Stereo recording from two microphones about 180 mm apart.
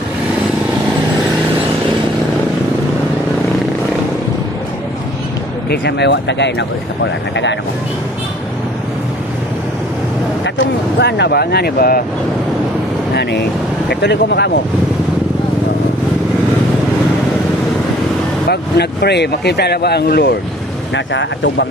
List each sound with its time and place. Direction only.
5.7 s speech: 70° left (ahead or behind)
11.0 s speech: 70° left (ahead or behind)
13.1 s speech: 65° left (ahead or behind)
18.5 s speech: 65° left (ahead or behind)
20.9 s speech: 90° left